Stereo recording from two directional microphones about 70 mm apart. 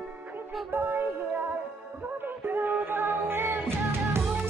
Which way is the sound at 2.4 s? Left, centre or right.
Right.